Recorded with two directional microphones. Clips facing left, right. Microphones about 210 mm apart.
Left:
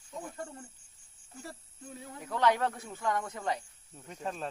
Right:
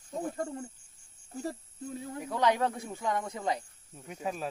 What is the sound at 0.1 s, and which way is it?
Speech, 40° right (ahead or behind).